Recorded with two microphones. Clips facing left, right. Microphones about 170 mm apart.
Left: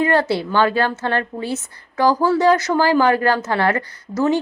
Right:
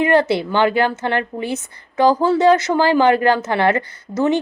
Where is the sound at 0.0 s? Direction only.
20° right (ahead or behind).